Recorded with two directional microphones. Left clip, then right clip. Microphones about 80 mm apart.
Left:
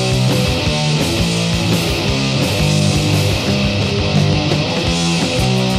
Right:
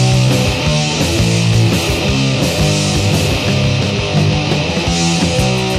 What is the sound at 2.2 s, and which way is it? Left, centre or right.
Music, left.